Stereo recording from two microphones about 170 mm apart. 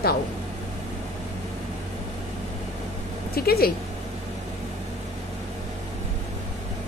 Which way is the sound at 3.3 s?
65° left (ahead or behind).